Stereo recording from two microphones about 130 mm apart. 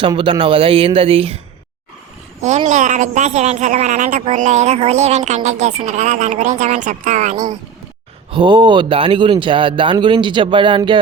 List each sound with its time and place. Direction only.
0.0 s speech: 40° right (ahead or behind)
2.6 s speech: 70° right (ahead or behind)
8.3 s speech: 40° right (ahead or behind)